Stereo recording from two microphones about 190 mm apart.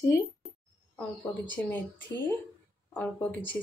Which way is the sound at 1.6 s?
10° left (ahead or behind).